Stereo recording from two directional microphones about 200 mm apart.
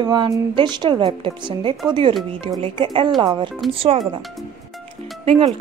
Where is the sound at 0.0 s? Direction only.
20° right (ahead or behind).